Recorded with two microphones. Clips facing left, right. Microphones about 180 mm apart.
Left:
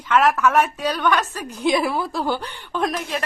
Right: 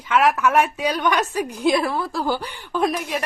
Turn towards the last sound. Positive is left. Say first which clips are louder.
# right 2 dB
turn(degrees=-10)  # may be behind; listen again after turning